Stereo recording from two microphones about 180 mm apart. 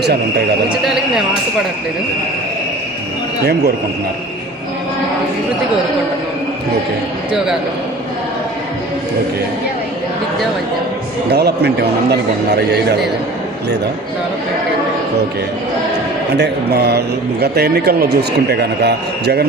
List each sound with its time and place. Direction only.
0.0 s a man's voice: 65° right (ahead or behind)
0.9 s a sound: 5° right (ahead or behind)
11.3 s a man's voice: 65° right (ahead or behind)
16.4 s a man's voice: 65° right (ahead or behind)